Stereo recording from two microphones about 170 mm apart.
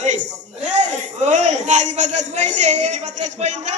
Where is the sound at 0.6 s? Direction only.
45° right (ahead or behind).